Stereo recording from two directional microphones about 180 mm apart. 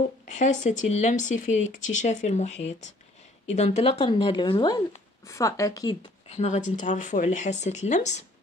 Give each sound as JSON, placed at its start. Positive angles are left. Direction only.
{"t": 0.3, "sound": "speech", "side_deg": 40}
{"t": 6.2, "sound": "speech", "side_deg": 40}